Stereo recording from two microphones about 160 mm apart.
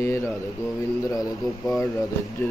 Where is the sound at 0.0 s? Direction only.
15° left (ahead or behind).